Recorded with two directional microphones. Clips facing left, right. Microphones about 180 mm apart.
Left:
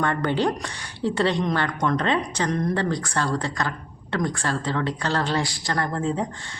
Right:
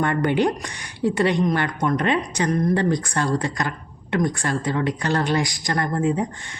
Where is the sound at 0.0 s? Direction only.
15° right (ahead or behind).